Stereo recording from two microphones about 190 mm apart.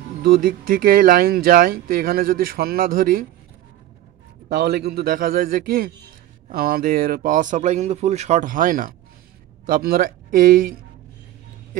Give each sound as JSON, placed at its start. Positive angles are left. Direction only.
{"t": 0.2, "sound": "speech", "side_deg": -50}
{"t": 4.5, "sound": "speech", "side_deg": -60}